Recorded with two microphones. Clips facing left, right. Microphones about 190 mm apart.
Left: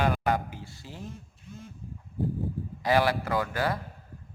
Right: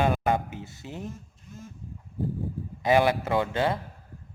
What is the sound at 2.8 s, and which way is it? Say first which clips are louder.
Speech: right 3 dB; 20° right (ahead or behind).